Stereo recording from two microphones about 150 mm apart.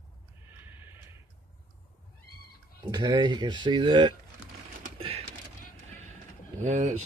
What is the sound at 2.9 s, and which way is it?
Speech, 30° right (ahead or behind).